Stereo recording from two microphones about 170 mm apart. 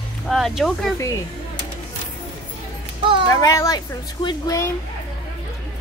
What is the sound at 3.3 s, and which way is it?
A woman's voice, 20° left (ahead or behind).